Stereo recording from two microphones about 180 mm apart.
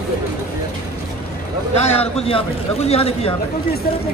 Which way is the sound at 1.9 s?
35° left (ahead or behind).